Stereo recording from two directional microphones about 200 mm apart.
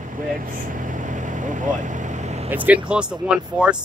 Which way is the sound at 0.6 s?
40° right (ahead or behind).